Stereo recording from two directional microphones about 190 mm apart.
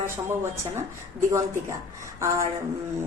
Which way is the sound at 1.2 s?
15° right (ahead or behind).